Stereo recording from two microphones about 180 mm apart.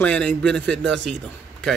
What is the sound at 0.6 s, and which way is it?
A man's voice, 80° right.